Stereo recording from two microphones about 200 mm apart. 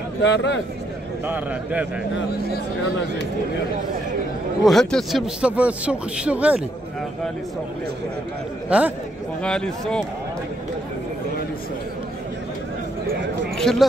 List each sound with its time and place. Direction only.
0.2 s speech: 60° left (ahead or behind)
1.2 s a man's voice: 10° right (ahead or behind)
4.6 s a man's voice: centre (ahead or behind)
8.6 s a man's voice: 5° right (ahead or behind)
9.4 s a man's voice: 5° left (ahead or behind)
13.6 s a man's voice: centre (ahead or behind)